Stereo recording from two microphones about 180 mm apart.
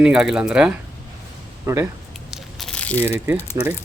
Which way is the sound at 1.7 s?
15° right (ahead or behind).